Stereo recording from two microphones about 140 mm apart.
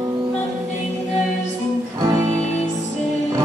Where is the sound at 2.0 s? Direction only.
25° right (ahead or behind).